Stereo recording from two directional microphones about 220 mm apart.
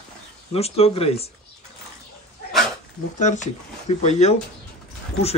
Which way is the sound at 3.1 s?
35° left (ahead or behind).